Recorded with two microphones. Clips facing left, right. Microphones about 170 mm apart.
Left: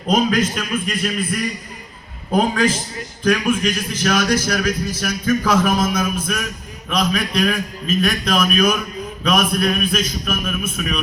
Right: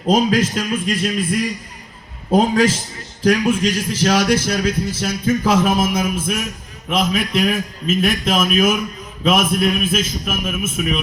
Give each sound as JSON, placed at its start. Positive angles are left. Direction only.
{"t": 0.1, "sound": "a man's voice", "side_deg": -30}
{"t": 3.2, "sound": "a man's voice", "side_deg": -25}